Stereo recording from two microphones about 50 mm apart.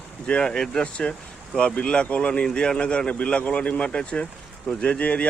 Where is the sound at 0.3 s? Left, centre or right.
Centre.